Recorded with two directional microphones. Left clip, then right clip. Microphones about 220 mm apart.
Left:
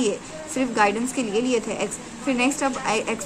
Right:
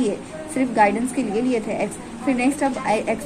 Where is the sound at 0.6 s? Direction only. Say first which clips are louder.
Right 3 dB; 20° left (ahead or behind).